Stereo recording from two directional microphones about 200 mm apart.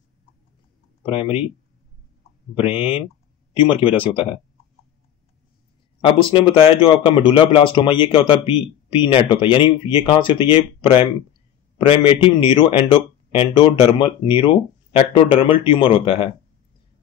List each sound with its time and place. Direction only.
1.0 s a man's voice: 25° left (ahead or behind)
2.5 s a man's voice: 30° left (ahead or behind)
5.9 s a man's voice: 25° left (ahead or behind)